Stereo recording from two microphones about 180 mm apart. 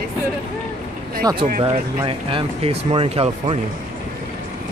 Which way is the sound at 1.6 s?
30° right (ahead or behind).